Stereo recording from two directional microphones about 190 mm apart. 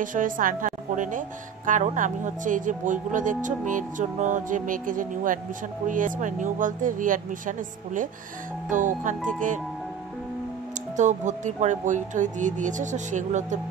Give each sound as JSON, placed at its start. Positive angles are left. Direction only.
{"t": 0.0, "sound": "speech", "side_deg": -45}
{"t": 11.0, "sound": "speech", "side_deg": -40}